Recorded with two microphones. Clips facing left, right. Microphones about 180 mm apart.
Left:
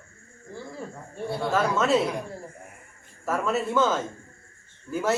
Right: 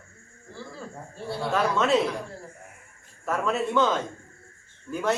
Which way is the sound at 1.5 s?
Centre (ahead or behind).